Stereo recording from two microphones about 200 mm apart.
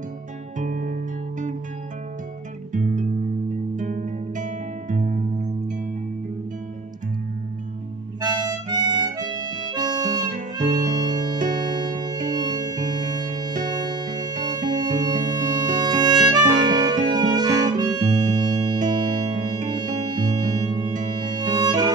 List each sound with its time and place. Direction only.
0.6 s music: 40° right (ahead or behind)
2.7 s music: 40° right (ahead or behind)
8.2 s harmonica: 20° right (ahead or behind)
10.6 s music: 20° right (ahead or behind)
17.1 s harmonica: 20° right (ahead or behind)
19.7 s organ: 20° right (ahead or behind)
21.3 s music: 20° right (ahead or behind)